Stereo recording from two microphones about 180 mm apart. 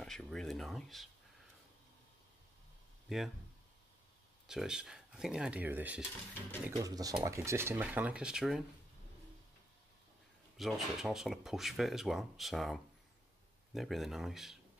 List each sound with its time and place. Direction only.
0.0 s speech: 5° left (ahead or behind)
3.1 s speech: centre (ahead or behind)
4.5 s speech: 5° right (ahead or behind)
6.8 s speech: 20° right (ahead or behind); by 8.6 s centre (ahead or behind)
10.6 s speech: centre (ahead or behind)